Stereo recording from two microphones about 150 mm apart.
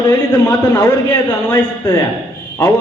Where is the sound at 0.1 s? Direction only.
25° left (ahead or behind).